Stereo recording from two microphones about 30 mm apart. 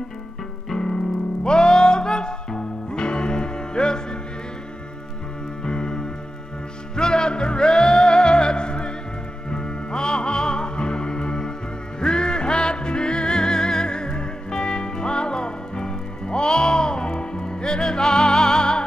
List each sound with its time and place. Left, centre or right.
1.4 s music: left
5.7 s music: left